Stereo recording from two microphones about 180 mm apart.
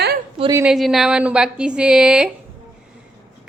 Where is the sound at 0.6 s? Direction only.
Centre (ahead or behind).